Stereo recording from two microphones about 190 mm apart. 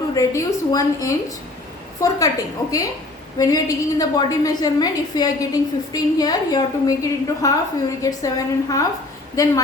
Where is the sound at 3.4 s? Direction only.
15° left (ahead or behind).